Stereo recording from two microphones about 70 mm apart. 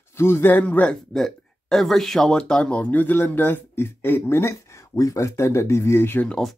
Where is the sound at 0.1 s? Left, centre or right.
Left.